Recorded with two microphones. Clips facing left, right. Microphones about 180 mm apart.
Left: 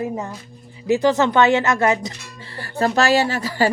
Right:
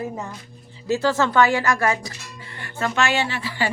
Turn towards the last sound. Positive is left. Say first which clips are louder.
# left 6 dB
turn(degrees=40)  # may be behind; listen again after turning